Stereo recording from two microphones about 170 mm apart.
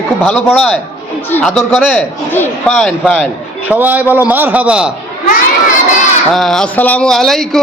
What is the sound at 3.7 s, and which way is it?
A man's voice, 10° right (ahead or behind).